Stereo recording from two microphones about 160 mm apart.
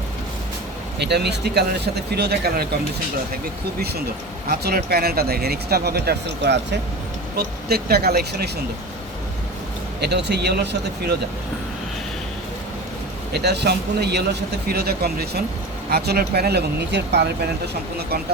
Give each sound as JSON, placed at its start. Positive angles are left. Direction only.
{"t": 0.9, "sound": "speech", "side_deg": -90}
{"t": 3.8, "sound": "speech", "side_deg": -80}
{"t": 10.0, "sound": "speech", "side_deg": -90}
{"t": 13.3, "sound": "speech", "side_deg": -90}